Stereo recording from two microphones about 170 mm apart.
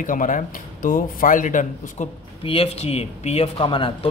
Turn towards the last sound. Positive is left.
turn(degrees=30)  # may be behind; listen again after turning